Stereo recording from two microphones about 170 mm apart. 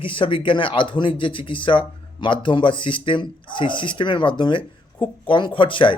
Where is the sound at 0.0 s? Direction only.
30° left (ahead or behind).